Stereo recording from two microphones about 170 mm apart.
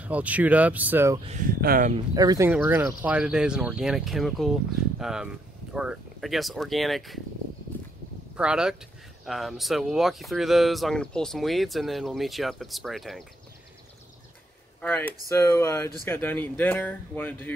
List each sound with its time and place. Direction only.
0.0 s speech: 10° right (ahead or behind)
1.6 s speech: 55° right (ahead or behind)
2.1 s speech: 20° right (ahead or behind); by 7.2 s centre (ahead or behind)
8.4 s speech: 5° right (ahead or behind)
14.8 s speech: 10° left (ahead or behind)